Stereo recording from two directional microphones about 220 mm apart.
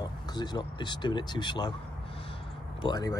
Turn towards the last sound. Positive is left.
turn(degrees=20)  # may be behind; listen again after turning